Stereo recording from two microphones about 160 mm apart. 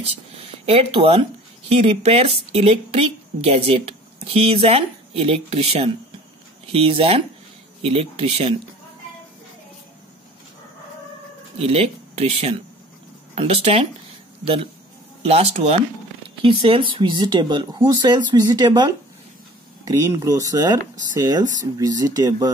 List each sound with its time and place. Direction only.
0.7 s a woman's voice: 35° right (ahead or behind)
11.5 s a woman's voice: 40° right (ahead or behind); by 22.5 s 20° right (ahead or behind)